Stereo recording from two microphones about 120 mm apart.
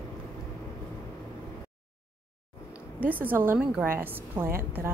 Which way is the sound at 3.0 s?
15° right (ahead or behind).